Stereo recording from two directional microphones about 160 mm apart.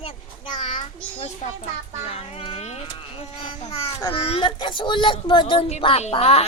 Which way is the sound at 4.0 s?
35° left (ahead or behind).